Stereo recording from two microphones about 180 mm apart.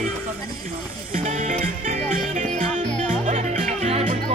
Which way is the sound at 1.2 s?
45° right (ahead or behind).